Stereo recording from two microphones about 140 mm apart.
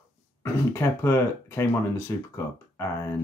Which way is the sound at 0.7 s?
20° left (ahead or behind).